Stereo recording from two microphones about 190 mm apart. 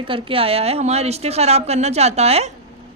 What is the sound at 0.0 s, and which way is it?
A woman's voice, 30° right (ahead or behind).